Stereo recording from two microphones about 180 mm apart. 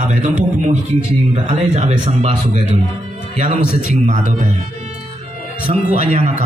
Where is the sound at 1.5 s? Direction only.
35° right (ahead or behind).